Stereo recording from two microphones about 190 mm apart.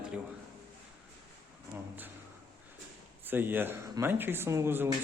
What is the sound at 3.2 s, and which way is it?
Speech, 10° right (ahead or behind).